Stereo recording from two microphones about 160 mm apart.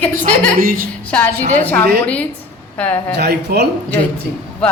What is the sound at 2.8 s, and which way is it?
Speech, 10° left (ahead or behind).